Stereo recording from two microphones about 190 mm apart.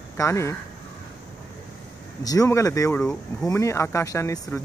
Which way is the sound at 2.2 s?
20° left (ahead or behind).